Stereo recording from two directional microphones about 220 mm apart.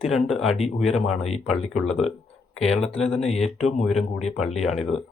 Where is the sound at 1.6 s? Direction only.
Centre (ahead or behind).